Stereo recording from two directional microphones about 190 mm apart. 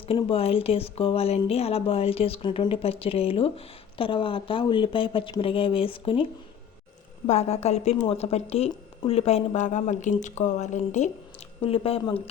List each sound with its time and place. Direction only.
0.1 s speech: 30° left (ahead or behind)
7.3 s a woman's voice: 35° left (ahead or behind)